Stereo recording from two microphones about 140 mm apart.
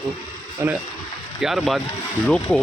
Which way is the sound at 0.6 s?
20° right (ahead or behind).